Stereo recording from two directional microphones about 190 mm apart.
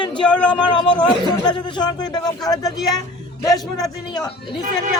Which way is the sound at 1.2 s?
20° left (ahead or behind).